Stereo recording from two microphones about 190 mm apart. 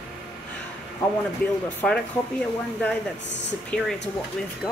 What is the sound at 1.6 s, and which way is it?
Speech, 5° left (ahead or behind).